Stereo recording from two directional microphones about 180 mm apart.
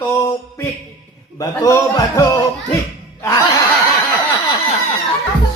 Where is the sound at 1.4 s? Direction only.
20° left (ahead or behind).